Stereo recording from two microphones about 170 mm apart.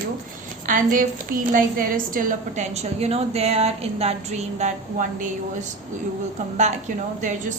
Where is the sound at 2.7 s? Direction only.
40° right (ahead or behind).